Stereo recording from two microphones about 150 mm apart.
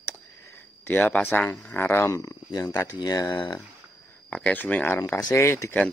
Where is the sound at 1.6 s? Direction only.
15° left (ahead or behind).